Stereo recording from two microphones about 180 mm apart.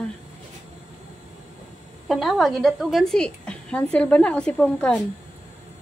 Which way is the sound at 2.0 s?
Centre (ahead or behind).